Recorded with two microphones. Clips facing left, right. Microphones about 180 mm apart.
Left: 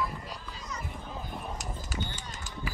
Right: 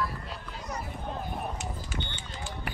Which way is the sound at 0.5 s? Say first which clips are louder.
Right 4 dB; 60° right (ahead or behind).